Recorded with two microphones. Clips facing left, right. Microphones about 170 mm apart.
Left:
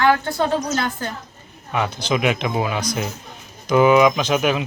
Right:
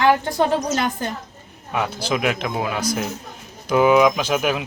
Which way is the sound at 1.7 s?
5° right (ahead or behind).